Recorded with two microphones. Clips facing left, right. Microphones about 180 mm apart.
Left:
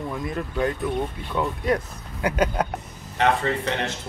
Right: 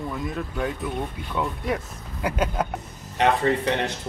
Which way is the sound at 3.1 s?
15° right (ahead or behind).